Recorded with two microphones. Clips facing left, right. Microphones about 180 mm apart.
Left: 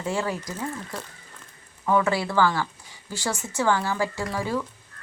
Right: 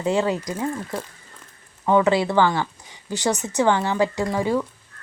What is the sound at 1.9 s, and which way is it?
Speech, 20° right (ahead or behind).